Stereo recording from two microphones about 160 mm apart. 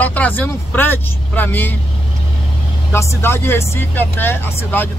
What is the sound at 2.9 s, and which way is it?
Speech, 15° left (ahead or behind).